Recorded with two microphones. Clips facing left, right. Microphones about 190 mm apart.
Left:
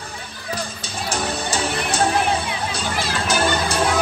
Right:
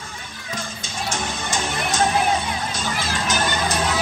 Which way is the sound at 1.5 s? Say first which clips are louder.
Right 1 dB; 30° left (ahead or behind).